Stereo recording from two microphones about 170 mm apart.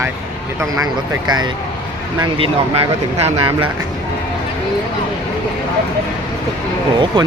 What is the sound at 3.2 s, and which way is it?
Speech, 30° right (ahead or behind).